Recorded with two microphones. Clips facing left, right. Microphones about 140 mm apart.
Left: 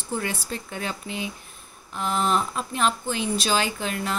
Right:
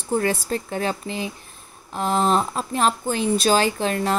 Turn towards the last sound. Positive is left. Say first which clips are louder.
# right 6 dB
turn(degrees=-35)  # may be behind; listen again after turning